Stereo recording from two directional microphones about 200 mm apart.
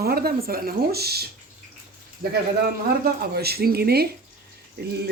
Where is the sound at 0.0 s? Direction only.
50° right (ahead or behind).